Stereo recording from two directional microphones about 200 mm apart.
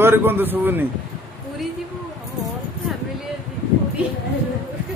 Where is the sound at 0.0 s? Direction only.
10° right (ahead or behind).